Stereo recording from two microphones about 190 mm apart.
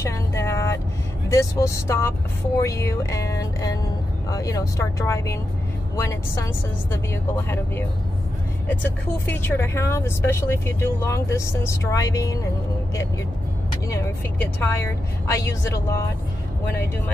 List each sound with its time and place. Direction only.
0.0 s vehicle: 15° left (ahead or behind)
1.3 s speech: 15° left (ahead or behind)
13.8 s speech: 15° left (ahead or behind)